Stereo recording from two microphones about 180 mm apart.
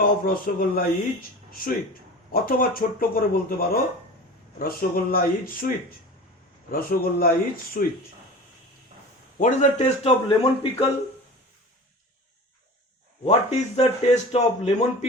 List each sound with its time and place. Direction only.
0.0 s speech: 50° left (ahead or behind)
9.4 s a man's voice: 40° left (ahead or behind)
13.2 s a man's voice: 35° left (ahead or behind)